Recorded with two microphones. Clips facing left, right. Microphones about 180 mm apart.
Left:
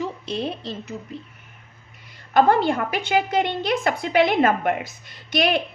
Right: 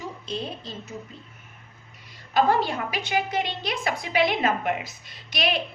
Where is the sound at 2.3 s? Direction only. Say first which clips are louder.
Left 4 dB; 55° left (ahead or behind).